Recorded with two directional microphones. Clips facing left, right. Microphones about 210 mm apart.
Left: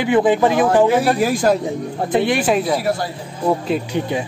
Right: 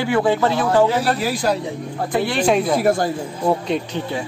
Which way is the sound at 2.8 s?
50° right (ahead or behind).